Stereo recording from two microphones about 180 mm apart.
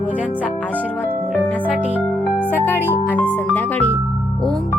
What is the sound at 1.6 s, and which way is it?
Speech, 5° right (ahead or behind).